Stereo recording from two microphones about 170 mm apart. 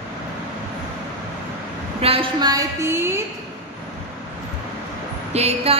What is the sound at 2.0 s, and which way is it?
A woman's voice, 30° right (ahead or behind).